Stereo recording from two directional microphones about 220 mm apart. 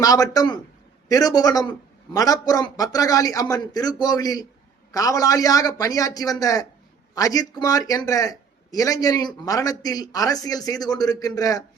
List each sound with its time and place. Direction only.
0.0 s speech: 15° left (ahead or behind)